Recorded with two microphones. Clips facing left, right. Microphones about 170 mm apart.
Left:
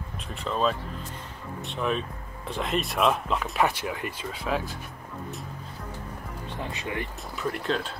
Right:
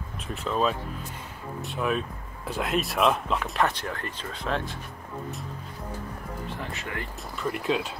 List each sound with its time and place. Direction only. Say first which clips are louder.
0.3 s speech: right 1 dB; centre (ahead or behind)
6.7 s speech: left 3 dB; 20° left (ahead or behind)
7.3 s speech: right 1 dB; centre (ahead or behind)